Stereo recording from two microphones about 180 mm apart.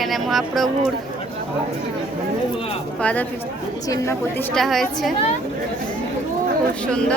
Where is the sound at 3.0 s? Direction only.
10° left (ahead or behind).